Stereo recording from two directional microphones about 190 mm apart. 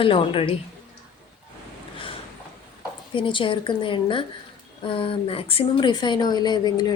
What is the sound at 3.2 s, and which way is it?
Speech, 25° left (ahead or behind).